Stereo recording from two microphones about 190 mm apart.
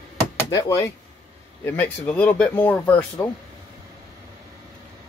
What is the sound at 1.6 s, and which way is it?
Speech, 10° left (ahead or behind).